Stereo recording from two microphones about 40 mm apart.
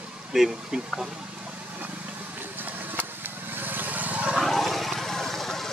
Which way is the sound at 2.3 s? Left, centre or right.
Right.